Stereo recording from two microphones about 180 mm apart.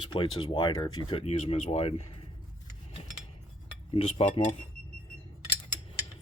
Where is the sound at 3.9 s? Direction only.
30° left (ahead or behind).